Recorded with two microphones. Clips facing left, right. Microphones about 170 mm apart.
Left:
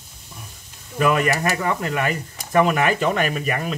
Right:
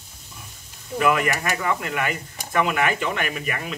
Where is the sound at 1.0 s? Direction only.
35° left (ahead or behind).